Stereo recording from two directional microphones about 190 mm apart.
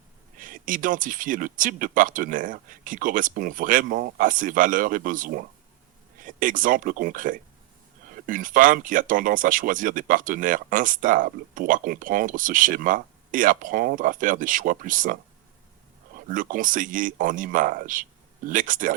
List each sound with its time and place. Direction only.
0.3 s speech: 45° right (ahead or behind)